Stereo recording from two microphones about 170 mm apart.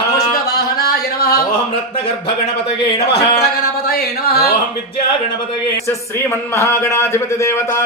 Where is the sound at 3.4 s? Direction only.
65° left (ahead or behind).